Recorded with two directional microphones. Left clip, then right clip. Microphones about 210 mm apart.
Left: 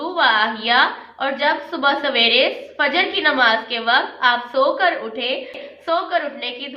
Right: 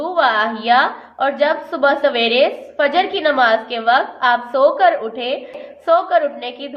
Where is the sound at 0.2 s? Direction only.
45° right (ahead or behind).